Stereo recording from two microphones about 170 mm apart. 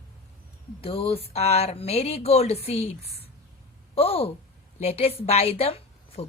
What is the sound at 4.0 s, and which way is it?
Speech, 35° left (ahead or behind).